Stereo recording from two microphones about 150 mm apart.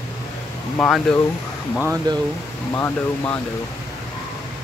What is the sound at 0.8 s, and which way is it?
Speech, 5° left (ahead or behind).